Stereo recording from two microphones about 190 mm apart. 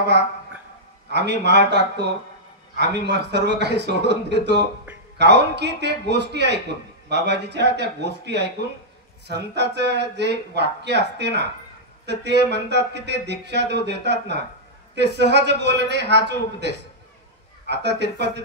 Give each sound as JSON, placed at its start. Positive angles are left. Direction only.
{"t": 1.1, "sound": "speech", "side_deg": -60}